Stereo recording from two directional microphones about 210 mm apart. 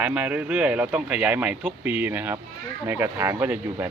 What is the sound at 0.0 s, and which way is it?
Speech, 5° right (ahead or behind).